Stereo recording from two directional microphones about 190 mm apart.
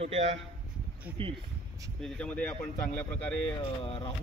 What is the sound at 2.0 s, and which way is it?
Speech, 5° left (ahead or behind).